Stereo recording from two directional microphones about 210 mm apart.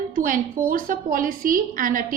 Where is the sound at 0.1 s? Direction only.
40° right (ahead or behind).